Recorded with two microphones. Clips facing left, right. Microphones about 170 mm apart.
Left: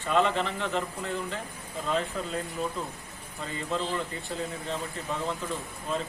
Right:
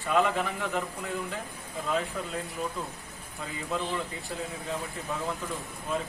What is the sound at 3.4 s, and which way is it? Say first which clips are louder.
Speech: left 1 dB; 5° right (ahead or behind).